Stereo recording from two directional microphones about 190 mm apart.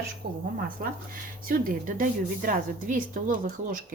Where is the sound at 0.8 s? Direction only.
45° right (ahead or behind).